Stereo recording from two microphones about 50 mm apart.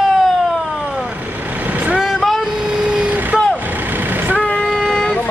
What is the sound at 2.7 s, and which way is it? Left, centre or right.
Vehicle, centre.